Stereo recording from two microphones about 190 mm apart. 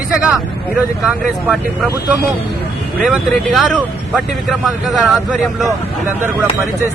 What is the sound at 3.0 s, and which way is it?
Speech, centre (ahead or behind).